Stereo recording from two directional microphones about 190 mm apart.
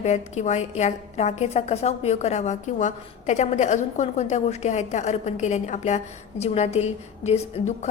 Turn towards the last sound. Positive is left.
turn(degrees=35)  # may be behind; listen again after turning